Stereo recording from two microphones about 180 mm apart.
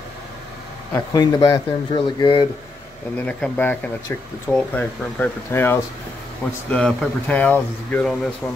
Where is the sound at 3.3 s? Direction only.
5° left (ahead or behind).